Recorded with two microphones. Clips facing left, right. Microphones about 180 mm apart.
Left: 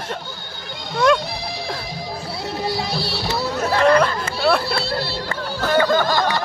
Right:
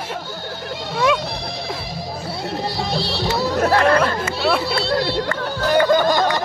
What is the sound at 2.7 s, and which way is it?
Music, centre (ahead or behind).